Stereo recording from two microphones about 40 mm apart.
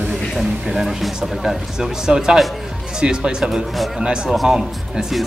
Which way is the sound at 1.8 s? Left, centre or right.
Centre.